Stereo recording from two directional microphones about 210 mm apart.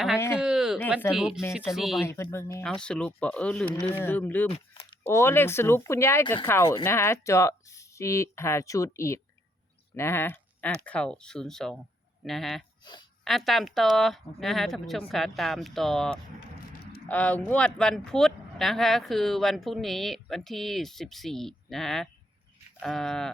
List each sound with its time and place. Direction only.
0.3 s a sound: 5° right (ahead or behind)
1.1 s speech: 5° right (ahead or behind)
2.0 s speech: 15° left (ahead or behind)
4.4 s speech: 25° left (ahead or behind)
5.0 s speech: 10° left (ahead or behind)
12.8 s a sound: 20° left (ahead or behind)
13.2 s speech: centre (ahead or behind)